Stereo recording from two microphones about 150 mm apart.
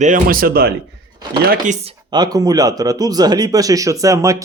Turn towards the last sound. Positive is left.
turn(degrees=-20)  # may be behind; listen again after turning